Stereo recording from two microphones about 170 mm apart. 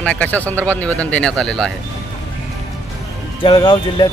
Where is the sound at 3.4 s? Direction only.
25° left (ahead or behind).